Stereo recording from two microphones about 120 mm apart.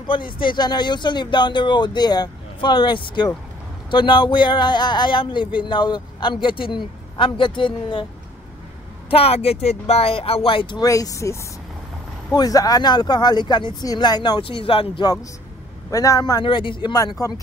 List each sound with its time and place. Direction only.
0.0 s a man's voice: 45° left (ahead or behind)
9.1 s a man's voice: 55° left (ahead or behind)
10.8 s speech: 30° left (ahead or behind)
12.4 s speech: 30° left (ahead or behind); by 15.0 s 50° left (ahead or behind)
15.9 s speech: 30° left (ahead or behind)